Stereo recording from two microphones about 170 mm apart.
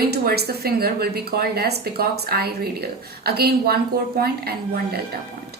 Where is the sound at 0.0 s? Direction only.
65° right (ahead or behind).